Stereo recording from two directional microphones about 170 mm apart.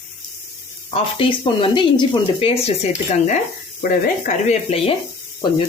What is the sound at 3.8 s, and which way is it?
Speech, 50° left (ahead or behind).